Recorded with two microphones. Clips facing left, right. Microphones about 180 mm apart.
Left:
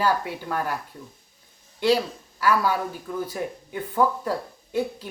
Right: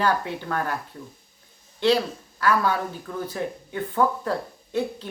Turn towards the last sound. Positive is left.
turn(degrees=10)  # may be behind; listen again after turning